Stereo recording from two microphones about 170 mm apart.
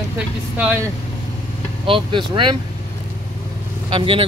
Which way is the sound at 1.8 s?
30° right (ahead or behind).